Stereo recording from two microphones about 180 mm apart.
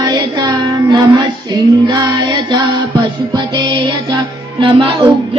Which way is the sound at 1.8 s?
25° right (ahead or behind).